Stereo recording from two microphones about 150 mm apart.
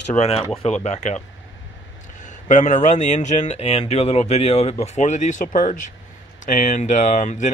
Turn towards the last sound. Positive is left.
turn(degrees=55)  # may be behind; listen again after turning